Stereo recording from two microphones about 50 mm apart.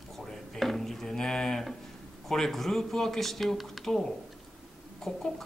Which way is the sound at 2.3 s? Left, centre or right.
Centre.